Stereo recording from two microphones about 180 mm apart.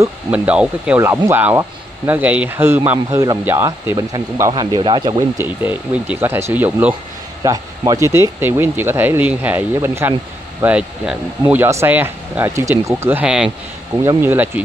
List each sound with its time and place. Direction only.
0.0 s speech: 5° right (ahead or behind); by 5.2 s 25° right (ahead or behind)
5.4 s speech: 10° right (ahead or behind)